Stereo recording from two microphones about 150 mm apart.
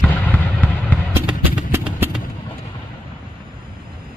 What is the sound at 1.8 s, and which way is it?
Vehicle, 5° right (ahead or behind).